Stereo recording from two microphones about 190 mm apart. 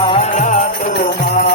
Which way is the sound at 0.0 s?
30° left (ahead or behind).